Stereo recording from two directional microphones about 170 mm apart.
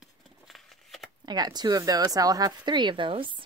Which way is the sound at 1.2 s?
25° right (ahead or behind).